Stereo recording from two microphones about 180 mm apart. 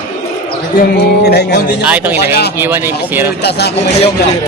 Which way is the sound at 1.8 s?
10° right (ahead or behind).